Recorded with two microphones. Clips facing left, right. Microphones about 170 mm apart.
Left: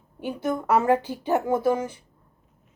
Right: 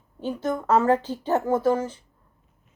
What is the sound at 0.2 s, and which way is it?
Speech, 10° left (ahead or behind).